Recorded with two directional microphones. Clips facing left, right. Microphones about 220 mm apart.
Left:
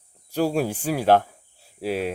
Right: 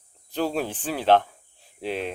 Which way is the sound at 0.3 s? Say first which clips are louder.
Left 4 dB; 10° left (ahead or behind).